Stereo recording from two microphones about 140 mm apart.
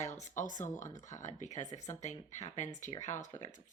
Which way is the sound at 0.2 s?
65° left (ahead or behind).